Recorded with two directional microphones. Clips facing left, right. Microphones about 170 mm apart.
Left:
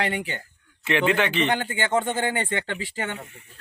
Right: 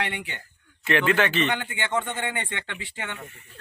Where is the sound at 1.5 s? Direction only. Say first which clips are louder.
Left 4 dB; 40° left (ahead or behind).